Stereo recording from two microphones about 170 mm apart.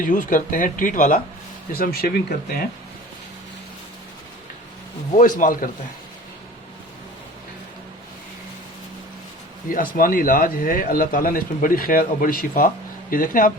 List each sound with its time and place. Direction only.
0.0 s speech: 50° left (ahead or behind)
5.4 s speech: 55° left (ahead or behind)
9.9 s speech: 55° left (ahead or behind)